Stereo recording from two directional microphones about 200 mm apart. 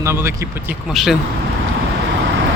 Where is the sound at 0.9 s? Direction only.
Centre (ahead or behind).